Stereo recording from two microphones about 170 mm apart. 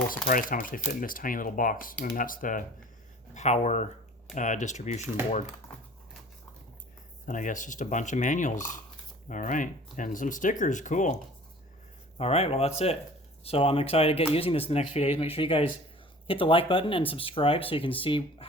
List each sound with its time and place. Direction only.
0.3 s speech: 50° left (ahead or behind)
7.3 s speech: 50° left (ahead or behind); by 18.4 s 30° left (ahead or behind)